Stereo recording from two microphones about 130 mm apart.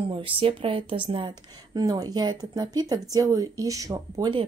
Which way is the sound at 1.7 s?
30° right (ahead or behind).